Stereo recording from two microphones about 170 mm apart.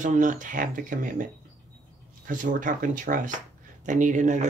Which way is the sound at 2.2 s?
50° right (ahead or behind).